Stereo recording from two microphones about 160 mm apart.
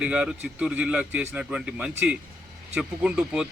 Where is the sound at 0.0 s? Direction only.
5° right (ahead or behind).